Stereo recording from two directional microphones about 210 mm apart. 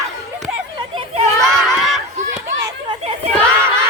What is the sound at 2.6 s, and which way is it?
Children playing, 25° right (ahead or behind).